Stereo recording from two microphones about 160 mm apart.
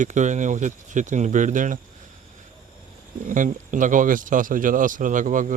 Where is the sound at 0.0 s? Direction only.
50° right (ahead or behind).